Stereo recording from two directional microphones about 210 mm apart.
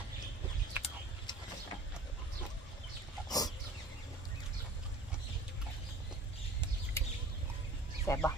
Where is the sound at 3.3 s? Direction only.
20° left (ahead or behind).